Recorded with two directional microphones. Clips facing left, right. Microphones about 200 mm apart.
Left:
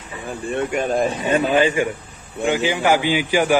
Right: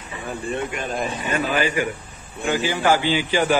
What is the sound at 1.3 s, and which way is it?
Speech, 30° left (ahead or behind).